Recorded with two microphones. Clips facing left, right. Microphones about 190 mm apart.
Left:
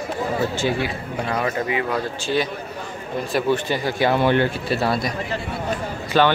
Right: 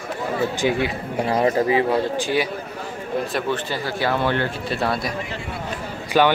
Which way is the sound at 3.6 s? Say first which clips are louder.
Left 3 dB; 15° left (ahead or behind).